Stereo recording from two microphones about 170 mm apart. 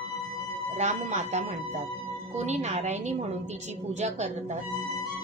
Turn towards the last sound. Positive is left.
turn(degrees=-40)  # may be behind; listen again after turning